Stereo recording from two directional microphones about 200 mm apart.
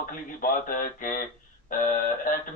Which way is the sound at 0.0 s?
45° left (ahead or behind).